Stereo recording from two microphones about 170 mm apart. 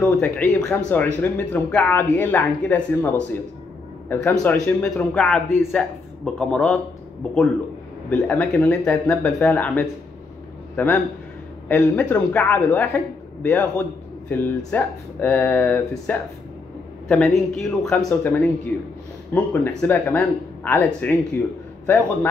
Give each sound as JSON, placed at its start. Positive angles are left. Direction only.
{"t": 0.0, "sound": "speech", "side_deg": 10}
{"t": 8.1, "sound": "speech", "side_deg": 10}